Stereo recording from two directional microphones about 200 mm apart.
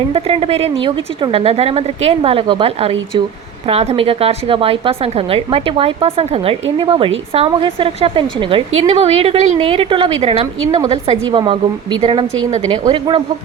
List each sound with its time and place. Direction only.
0.1 s a woman's voice: 30° right (ahead or behind)
10.8 s a woman's voice: 20° right (ahead or behind)